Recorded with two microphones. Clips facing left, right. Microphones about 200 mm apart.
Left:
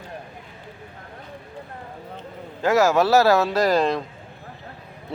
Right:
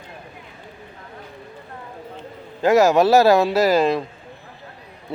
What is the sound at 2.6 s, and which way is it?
Speech, 15° right (ahead or behind).